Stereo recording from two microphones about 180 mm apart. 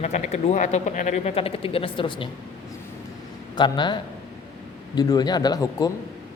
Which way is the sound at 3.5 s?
25° left (ahead or behind).